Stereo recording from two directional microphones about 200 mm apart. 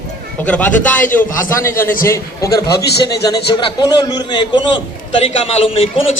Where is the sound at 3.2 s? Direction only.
20° left (ahead or behind).